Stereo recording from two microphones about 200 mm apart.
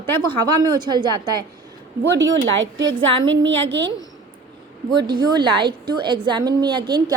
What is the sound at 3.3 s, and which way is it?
Speech, 70° right (ahead or behind).